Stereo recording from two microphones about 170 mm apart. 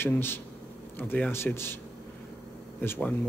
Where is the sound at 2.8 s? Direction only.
10° left (ahead or behind).